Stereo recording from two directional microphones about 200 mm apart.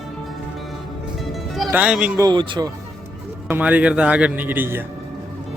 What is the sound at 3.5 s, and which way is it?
Speech, 10° right (ahead or behind).